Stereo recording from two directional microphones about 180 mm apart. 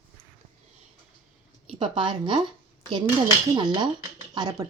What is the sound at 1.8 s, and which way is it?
Speech, 25° right (ahead or behind).